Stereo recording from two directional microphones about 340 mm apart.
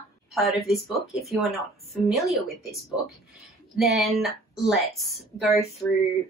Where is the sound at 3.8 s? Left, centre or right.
Centre.